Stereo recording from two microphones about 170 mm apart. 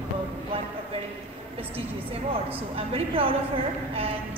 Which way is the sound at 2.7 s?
35° right (ahead or behind).